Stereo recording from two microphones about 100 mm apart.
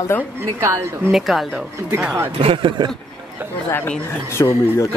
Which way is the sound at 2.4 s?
60° right (ahead or behind).